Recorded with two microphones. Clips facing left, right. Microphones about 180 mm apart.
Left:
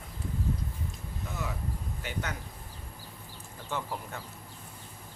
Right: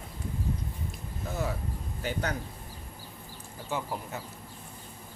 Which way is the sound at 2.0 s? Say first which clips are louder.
Right 6 dB; 35° right (ahead or behind).